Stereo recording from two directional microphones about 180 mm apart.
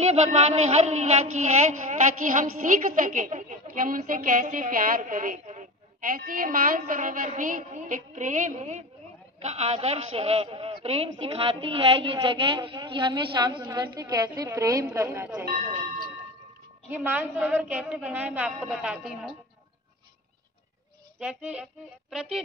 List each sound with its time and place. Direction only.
0.0 s a sound: 35° right (ahead or behind)
9.4 s a man's voice: 35° right (ahead or behind); by 15.4 s 10° right (ahead or behind)
16.9 s a woman's voice: 10° right (ahead or behind)
21.2 s a woman's voice: 5° right (ahead or behind)